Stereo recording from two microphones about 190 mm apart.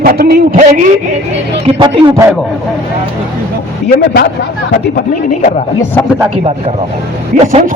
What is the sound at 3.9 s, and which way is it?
Speech, 55° left (ahead or behind).